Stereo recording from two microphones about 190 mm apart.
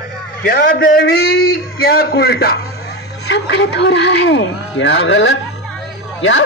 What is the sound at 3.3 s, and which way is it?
A man's voice, 65° left (ahead or behind).